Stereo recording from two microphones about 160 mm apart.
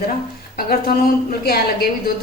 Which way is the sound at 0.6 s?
70° left (ahead or behind).